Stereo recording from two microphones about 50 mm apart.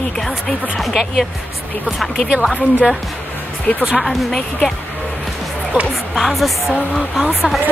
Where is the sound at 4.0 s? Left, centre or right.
Centre.